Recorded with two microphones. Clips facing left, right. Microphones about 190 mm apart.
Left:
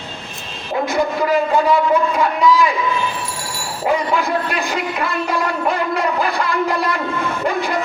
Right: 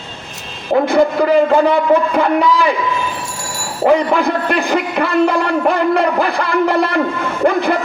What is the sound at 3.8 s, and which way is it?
Speech, 60° right (ahead or behind).